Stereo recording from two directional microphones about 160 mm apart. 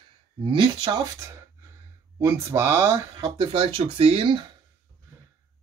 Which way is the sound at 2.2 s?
20° right (ahead or behind).